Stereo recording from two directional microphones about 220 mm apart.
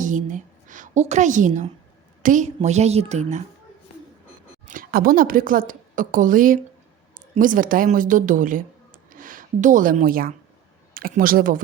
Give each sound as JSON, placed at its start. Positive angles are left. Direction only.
{"t": 0.0, "sound": "a woman's voice", "side_deg": -35}
{"t": 4.6, "sound": "a woman's voice", "side_deg": -40}